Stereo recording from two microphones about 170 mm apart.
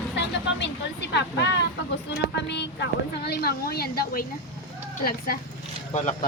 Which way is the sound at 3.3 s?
65° left (ahead or behind).